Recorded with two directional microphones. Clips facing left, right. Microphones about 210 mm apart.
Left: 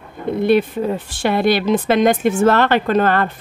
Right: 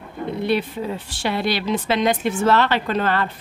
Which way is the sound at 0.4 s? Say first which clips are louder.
Left 7 dB; 50° left (ahead or behind).